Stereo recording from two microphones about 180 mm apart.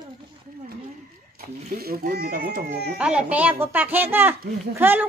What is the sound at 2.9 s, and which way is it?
Speech, 5° right (ahead or behind).